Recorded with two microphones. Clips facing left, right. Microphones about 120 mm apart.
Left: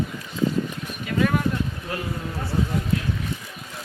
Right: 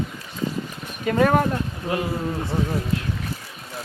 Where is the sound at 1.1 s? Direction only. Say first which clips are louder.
Right 4 dB; 45° right (ahead or behind).